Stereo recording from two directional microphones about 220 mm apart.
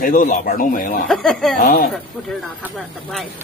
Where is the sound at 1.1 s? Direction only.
Centre (ahead or behind).